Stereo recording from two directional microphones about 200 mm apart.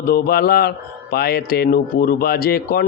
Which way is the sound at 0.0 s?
50° left (ahead or behind).